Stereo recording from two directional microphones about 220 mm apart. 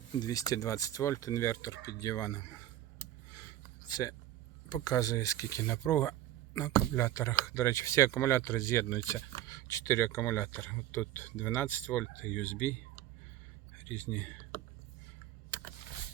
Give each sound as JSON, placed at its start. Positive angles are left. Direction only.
{"t": 0.2, "sound": "speech", "side_deg": 15}
{"t": 3.8, "sound": "speech", "side_deg": 15}
{"t": 13.7, "sound": "a sound", "side_deg": 5}
{"t": 15.4, "sound": "vehicle", "side_deg": 10}